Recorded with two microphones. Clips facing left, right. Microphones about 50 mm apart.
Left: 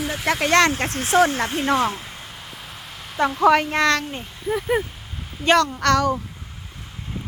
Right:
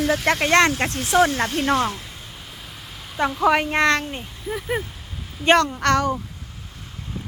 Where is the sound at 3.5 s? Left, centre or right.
Right.